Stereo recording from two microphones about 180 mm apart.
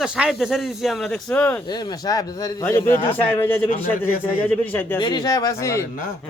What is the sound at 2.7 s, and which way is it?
Speech, 15° left (ahead or behind).